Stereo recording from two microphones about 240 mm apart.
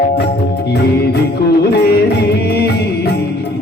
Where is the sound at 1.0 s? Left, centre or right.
Left.